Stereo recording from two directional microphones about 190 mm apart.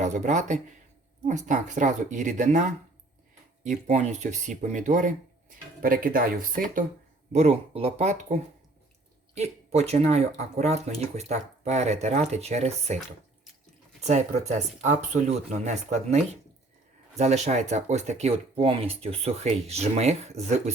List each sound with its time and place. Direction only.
0.0 s speech: 40° right (ahead or behind)
7.3 s speech: 35° right (ahead or behind)
14.0 s speech: 35° right (ahead or behind)